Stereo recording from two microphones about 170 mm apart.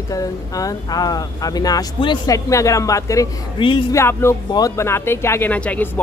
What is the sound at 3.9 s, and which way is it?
Speech, 15° left (ahead or behind).